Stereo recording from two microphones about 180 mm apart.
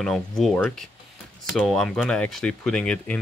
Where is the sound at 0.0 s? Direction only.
Centre (ahead or behind).